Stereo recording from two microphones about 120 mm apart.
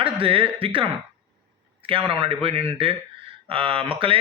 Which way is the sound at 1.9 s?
45° right (ahead or behind).